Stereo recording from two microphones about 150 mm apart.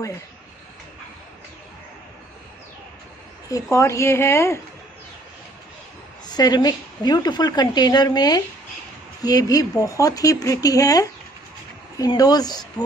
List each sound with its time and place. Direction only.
3.7 s speech: 20° left (ahead or behind)
6.2 s a woman's voice: 25° left (ahead or behind)